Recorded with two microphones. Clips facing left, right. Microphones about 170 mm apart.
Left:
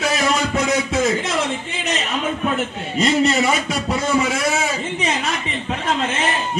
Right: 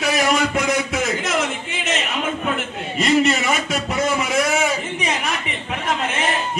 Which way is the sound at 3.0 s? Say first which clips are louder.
Left 1 dB; 35° left (ahead or behind).